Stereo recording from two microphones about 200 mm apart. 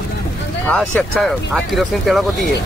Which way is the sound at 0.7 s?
5° left (ahead or behind).